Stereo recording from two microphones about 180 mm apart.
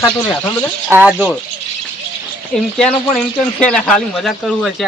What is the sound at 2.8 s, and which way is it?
A man's voice, 5° left (ahead or behind).